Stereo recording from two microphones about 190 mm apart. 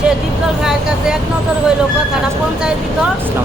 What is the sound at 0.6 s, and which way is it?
Vehicle, 5° right (ahead or behind).